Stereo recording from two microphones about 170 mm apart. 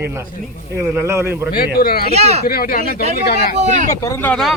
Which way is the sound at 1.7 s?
60° left (ahead or behind).